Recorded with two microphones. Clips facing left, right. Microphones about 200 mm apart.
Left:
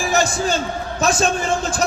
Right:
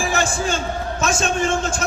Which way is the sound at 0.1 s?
40° left (ahead or behind).